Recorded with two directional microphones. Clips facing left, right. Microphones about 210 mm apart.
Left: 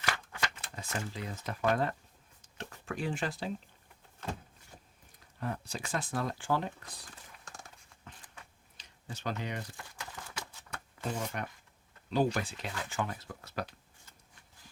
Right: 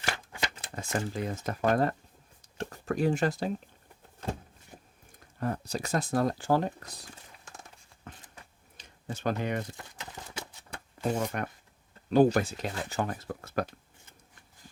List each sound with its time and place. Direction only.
0.3 s speech: 35° right (ahead or behind)
5.4 s speech: 40° right (ahead or behind)
8.1 s a sound: 50° right (ahead or behind)
8.8 s speech: 50° right (ahead or behind)
9.7 s clip-clop: 25° right (ahead or behind)
11.3 s speech: 55° right (ahead or behind)